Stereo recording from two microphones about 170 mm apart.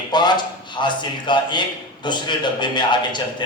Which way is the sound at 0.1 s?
25° left (ahead or behind).